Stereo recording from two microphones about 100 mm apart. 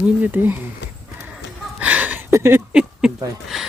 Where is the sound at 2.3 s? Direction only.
25° right (ahead or behind).